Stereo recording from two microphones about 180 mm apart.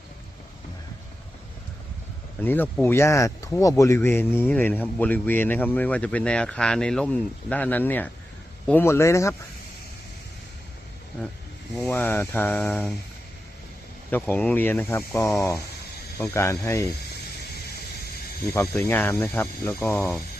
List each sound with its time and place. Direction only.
2.4 s speech: 10° left (ahead or behind)
11.8 s speech: 10° left (ahead or behind)
14.1 s speech: 10° left (ahead or behind)
18.5 s speech: 10° left (ahead or behind)